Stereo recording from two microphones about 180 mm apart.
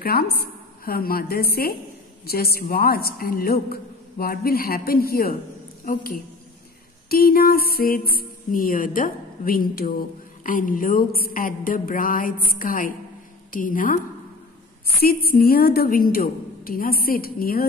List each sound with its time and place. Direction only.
0.0 s a woman's voice: 55° left (ahead or behind)
5.9 s music: 55° left (ahead or behind)
14.9 s a woman's voice: 55° left (ahead or behind)